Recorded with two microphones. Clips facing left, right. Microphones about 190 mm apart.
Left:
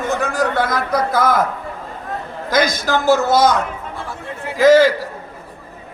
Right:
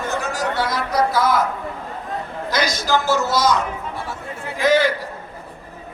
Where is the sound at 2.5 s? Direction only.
50° left (ahead or behind).